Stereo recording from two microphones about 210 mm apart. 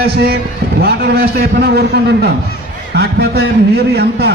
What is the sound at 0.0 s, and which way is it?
A man's voice, 45° right (ahead or behind).